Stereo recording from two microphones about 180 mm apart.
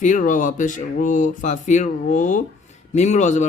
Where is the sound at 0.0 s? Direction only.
45° left (ahead or behind).